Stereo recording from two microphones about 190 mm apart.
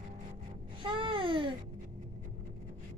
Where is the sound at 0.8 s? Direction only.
25° right (ahead or behind).